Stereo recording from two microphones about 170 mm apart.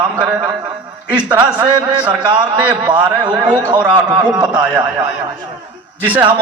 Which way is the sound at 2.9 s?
25° right (ahead or behind).